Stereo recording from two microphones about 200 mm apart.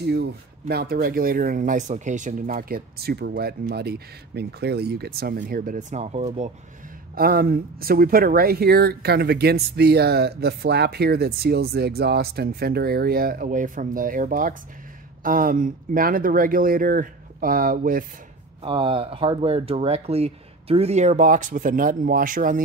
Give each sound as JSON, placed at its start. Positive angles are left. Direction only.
{"t": 0.0, "sound": "speech", "side_deg": -55}
{"t": 7.2, "sound": "speech", "side_deg": -50}
{"t": 18.6, "sound": "speech", "side_deg": -25}